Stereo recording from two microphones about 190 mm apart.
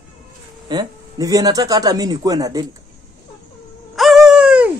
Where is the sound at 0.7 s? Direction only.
20° right (ahead or behind).